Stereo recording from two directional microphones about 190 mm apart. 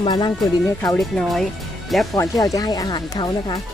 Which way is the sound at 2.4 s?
20° left (ahead or behind).